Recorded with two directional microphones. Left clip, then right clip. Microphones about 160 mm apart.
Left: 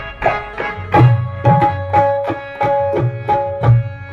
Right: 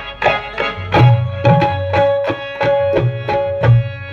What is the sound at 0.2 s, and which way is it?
Music, 25° right (ahead or behind).